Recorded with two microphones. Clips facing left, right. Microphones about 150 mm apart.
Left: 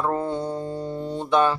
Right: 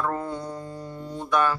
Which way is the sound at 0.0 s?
30° left (ahead or behind).